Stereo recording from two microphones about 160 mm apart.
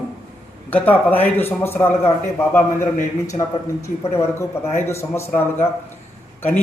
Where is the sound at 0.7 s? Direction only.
10° left (ahead or behind).